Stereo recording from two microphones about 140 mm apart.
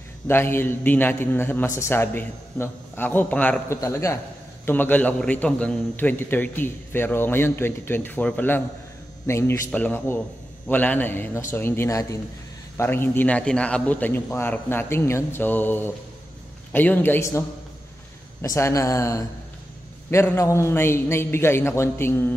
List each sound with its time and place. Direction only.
0.3 s a man's voice: 15° left (ahead or behind)